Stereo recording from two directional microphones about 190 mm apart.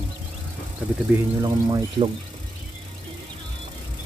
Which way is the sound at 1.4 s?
20° right (ahead or behind).